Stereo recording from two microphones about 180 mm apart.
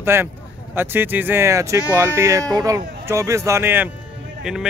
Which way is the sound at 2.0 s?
15° right (ahead or behind).